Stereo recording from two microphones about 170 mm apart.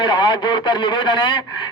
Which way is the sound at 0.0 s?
30° left (ahead or behind).